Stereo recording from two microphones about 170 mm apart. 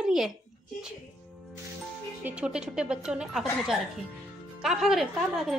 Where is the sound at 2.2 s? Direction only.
5° right (ahead or behind).